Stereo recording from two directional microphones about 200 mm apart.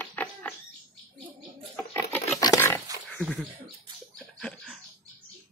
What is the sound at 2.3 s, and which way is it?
Roaring cats, 15° left (ahead or behind).